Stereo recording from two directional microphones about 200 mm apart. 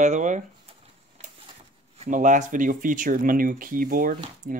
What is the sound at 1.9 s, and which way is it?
Speech, 40° right (ahead or behind).